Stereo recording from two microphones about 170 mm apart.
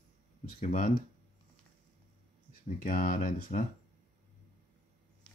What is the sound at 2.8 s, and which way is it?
Speech, 50° left (ahead or behind).